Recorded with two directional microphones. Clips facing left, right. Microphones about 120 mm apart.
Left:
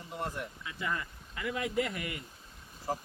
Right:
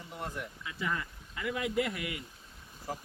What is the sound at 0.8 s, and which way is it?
Speech, centre (ahead or behind).